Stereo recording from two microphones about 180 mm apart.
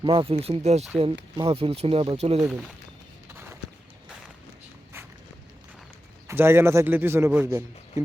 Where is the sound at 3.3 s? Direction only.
15° right (ahead or behind).